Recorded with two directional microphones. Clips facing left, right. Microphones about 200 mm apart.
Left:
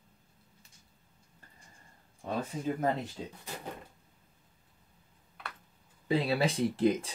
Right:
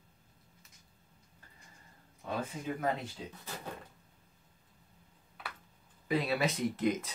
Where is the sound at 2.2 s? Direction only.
40° left (ahead or behind).